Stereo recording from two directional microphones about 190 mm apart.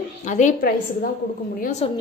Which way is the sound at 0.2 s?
40° left (ahead or behind).